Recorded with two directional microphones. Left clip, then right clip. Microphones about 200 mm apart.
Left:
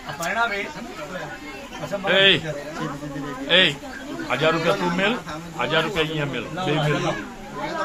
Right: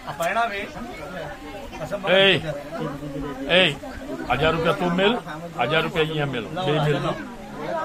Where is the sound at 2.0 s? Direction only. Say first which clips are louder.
Even; 45° right (ahead or behind).